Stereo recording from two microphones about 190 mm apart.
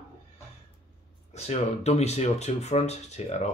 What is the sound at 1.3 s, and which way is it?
Speech, 35° left (ahead or behind).